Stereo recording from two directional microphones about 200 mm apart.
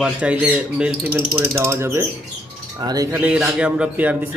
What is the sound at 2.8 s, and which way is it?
Chink, 20° right (ahead or behind).